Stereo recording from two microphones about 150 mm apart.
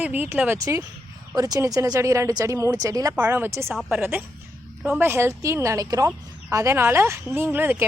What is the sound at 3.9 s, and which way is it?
A woman's voice, 15° right (ahead or behind).